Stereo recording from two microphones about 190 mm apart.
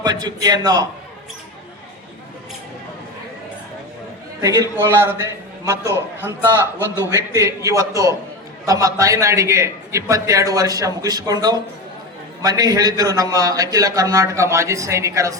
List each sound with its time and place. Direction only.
0.0 s a man's voice: 20° right (ahead or behind)
4.4 s a man's voice: 15° right (ahead or behind)